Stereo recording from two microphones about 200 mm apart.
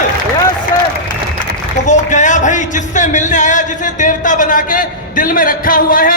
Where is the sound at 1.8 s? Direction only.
35° left (ahead or behind).